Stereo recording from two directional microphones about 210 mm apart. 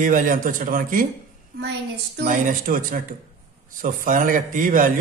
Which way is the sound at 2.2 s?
40° right (ahead or behind).